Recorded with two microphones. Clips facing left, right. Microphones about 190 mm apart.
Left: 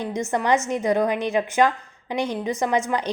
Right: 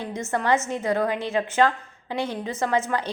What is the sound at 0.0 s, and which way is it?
A woman's voice, 15° left (ahead or behind).